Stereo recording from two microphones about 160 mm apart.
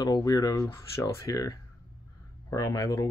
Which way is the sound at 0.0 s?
25° left (ahead or behind).